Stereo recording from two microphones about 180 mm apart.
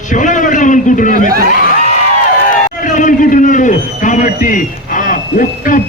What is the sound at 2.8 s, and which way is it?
A man's voice, 45° left (ahead or behind).